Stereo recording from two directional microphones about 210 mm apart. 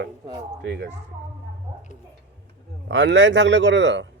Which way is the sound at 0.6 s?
55° right (ahead or behind).